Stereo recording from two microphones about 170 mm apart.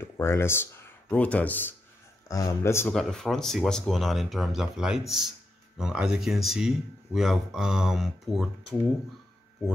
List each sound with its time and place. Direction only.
0.0 s speech: 15° left (ahead or behind)
2.9 s speech: 5° left (ahead or behind)